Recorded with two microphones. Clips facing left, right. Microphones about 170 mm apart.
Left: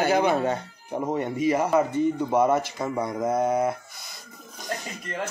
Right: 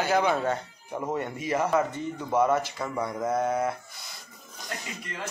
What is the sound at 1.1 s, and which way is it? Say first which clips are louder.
A man's voice: left 6 dB; 15° left (ahead or behind).